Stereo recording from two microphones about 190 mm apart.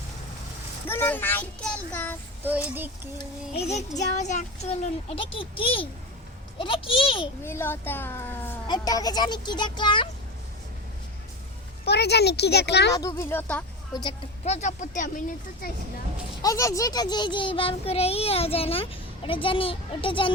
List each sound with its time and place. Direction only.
0.9 s a child's voice: 10° left (ahead or behind)
2.7 s a sound: 10° right (ahead or behind)
3.5 s a child's voice: 35° left (ahead or behind)
7.4 s a child's voice: 10° left (ahead or behind)
11.9 s speech: 60° left (ahead or behind)
12.9 s a child's voice: 15° left (ahead or behind)
14.0 s speech: 30° left (ahead or behind)
16.4 s a child's voice: 15° left (ahead or behind)